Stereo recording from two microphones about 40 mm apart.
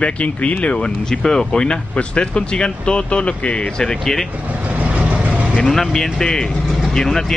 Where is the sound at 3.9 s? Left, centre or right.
Centre.